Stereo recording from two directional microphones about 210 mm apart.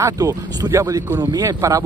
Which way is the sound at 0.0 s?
15° right (ahead or behind).